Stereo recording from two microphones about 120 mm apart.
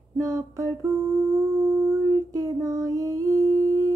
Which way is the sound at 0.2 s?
25° right (ahead or behind).